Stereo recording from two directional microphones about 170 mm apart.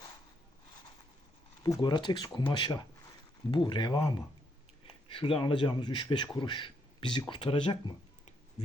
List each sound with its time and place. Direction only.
1.6 s speech: 25° left (ahead or behind)